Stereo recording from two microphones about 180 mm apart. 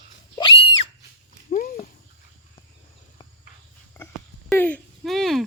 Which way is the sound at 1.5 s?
55° left (ahead or behind).